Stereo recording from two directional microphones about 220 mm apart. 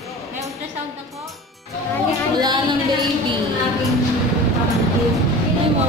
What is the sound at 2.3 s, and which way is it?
Speech, 20° right (ahead or behind).